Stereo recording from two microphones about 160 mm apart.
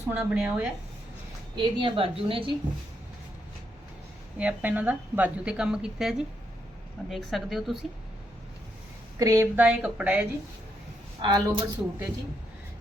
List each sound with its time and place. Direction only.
0.1 s speech: 10° right (ahead or behind)
1.5 s a woman's voice: 30° right (ahead or behind)
4.4 s a woman's voice: 10° right (ahead or behind)
9.1 s a woman's voice: 20° right (ahead or behind)
11.2 s a woman's voice: 25° right (ahead or behind)